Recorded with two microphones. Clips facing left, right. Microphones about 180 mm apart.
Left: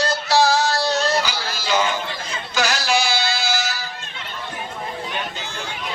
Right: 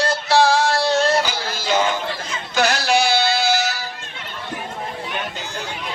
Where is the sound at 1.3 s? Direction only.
55° right (ahead or behind).